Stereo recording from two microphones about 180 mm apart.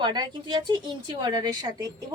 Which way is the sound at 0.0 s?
25° right (ahead or behind).